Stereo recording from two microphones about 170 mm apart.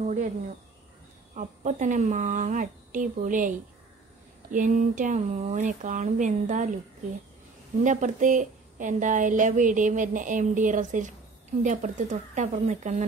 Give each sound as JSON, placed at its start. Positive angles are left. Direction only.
{"t": 0.0, "sound": "a woman's voice", "side_deg": -45}
{"t": 1.3, "sound": "a woman's voice", "side_deg": -45}
{"t": 7.8, "sound": "a woman's voice", "side_deg": -45}